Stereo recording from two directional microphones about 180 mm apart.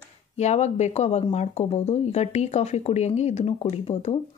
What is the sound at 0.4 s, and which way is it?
Speech, 40° left (ahead or behind).